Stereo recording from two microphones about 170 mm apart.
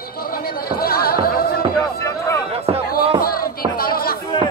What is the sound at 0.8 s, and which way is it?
Music, 60° left (ahead or behind).